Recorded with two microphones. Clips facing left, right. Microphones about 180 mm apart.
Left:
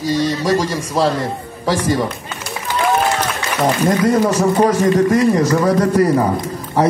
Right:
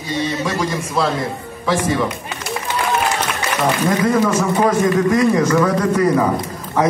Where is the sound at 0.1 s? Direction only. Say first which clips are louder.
Left 4 dB; 35° left (ahead or behind).